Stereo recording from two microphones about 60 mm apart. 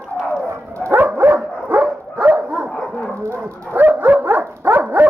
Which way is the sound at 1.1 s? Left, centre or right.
Right.